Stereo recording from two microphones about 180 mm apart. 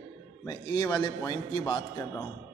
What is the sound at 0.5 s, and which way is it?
A man's voice, 20° left (ahead or behind).